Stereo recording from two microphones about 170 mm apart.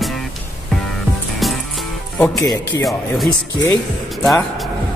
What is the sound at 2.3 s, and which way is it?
Speech, 20° left (ahead or behind).